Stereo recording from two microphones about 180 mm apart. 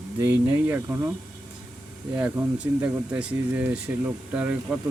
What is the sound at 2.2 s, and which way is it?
Speech, 10° right (ahead or behind).